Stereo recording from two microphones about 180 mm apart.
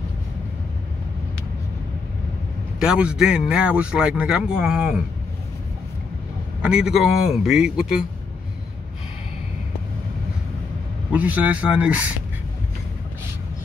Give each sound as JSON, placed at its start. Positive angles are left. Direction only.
{"t": 2.8, "sound": "speech", "side_deg": -5}
{"t": 6.6, "sound": "speech", "side_deg": -5}
{"t": 11.1, "sound": "speech", "side_deg": -10}